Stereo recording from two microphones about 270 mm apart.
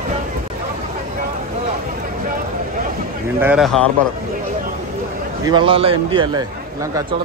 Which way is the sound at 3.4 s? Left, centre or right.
Centre.